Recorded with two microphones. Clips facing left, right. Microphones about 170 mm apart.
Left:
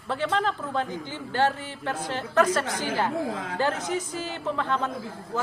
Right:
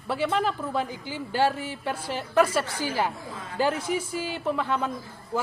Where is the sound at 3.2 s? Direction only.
90° left.